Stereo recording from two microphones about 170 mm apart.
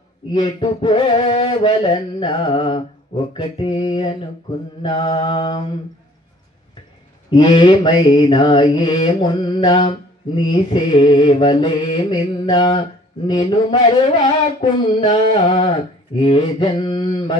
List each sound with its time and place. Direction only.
0.3 s a sound: 30° left (ahead or behind)
3.3 s mantra: 30° left (ahead or behind)
7.2 s mantra: 25° left (ahead or behind)